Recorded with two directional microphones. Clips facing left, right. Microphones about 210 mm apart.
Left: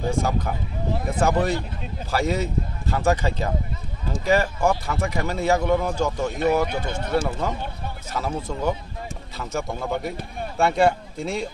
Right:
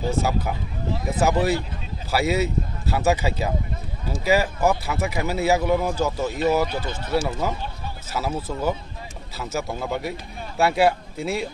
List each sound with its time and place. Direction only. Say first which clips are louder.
0.1 s a man's voice: even; 5° right (ahead or behind)
7.0 s speech: even; 55° left (ahead or behind)
7.2 s speech: even; 5° right (ahead or behind)